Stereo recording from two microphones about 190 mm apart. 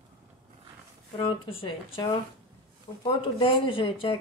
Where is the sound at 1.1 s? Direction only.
30° left (ahead or behind).